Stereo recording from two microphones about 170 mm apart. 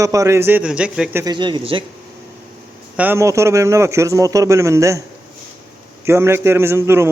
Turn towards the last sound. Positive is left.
turn(degrees=-15)  # may be behind; listen again after turning